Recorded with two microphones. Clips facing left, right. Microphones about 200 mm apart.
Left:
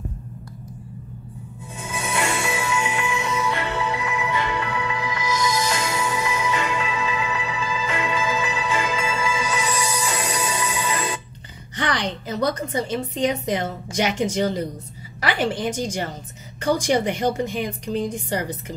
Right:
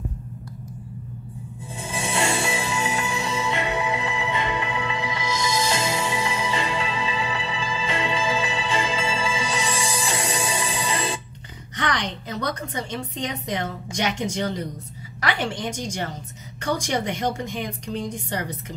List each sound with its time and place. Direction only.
1.8 s music: 30° right (ahead or behind)
4.0 s music: 30° right (ahead or behind)
11.7 s a sound: 5° left (ahead or behind)
12.3 s a woman's voice: 5° left (ahead or behind)
16.9 s speech: 5° left (ahead or behind)